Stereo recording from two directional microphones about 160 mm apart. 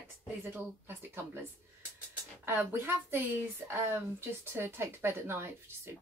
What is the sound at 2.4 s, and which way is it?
Speech, 15° right (ahead or behind).